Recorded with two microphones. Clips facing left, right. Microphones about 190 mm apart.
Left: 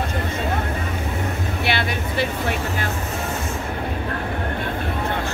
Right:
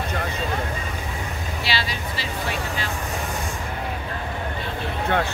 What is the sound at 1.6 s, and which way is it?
Speech, 55° left (ahead or behind).